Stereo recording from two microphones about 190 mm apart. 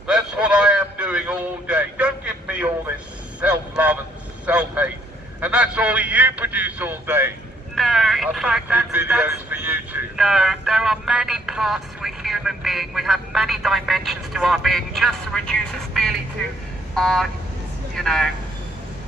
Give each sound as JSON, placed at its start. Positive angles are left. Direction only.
{"t": 0.0, "sound": "a sound", "side_deg": -5}
{"t": 3.3, "sound": "vehicle", "side_deg": -5}
{"t": 5.4, "sound": "a sound", "side_deg": -5}
{"t": 7.7, "sound": "vehicle", "side_deg": 0}
{"t": 16.9, "sound": "speech", "side_deg": 0}
{"t": 17.9, "sound": "vehicle", "side_deg": 0}